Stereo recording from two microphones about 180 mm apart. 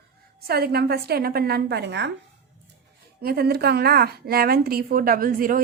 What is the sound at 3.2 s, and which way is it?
A woman's voice, 60° right (ahead or behind).